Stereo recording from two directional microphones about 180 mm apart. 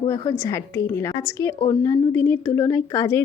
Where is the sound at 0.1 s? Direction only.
20° left (ahead or behind).